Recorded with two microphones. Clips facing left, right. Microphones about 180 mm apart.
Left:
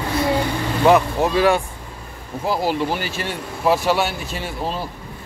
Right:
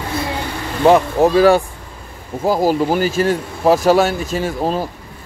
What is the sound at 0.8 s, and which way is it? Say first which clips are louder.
Speech: right 4 dB; 35° right (ahead or behind).